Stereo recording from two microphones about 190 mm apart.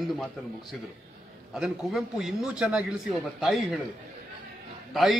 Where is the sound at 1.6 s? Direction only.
Centre (ahead or behind).